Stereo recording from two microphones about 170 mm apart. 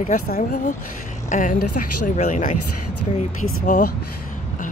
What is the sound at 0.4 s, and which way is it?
Speech, 50° left (ahead or behind).